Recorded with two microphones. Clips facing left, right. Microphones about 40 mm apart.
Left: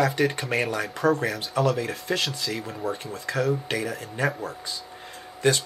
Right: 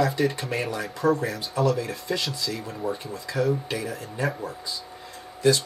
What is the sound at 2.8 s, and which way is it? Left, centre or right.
Speech, left.